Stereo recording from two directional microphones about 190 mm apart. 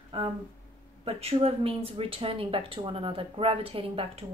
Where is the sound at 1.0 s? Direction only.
30° right (ahead or behind).